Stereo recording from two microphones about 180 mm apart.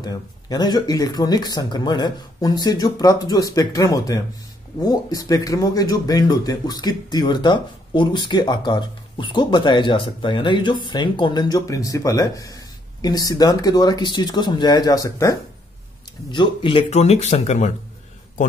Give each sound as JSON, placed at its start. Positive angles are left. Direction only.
{"t": 0.0, "sound": "speech", "side_deg": 20}